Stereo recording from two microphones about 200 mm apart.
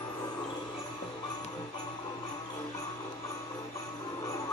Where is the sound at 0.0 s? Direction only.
20° left (ahead or behind).